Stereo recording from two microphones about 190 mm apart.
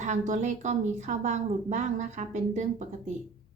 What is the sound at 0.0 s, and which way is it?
A woman's voice, 40° right (ahead or behind).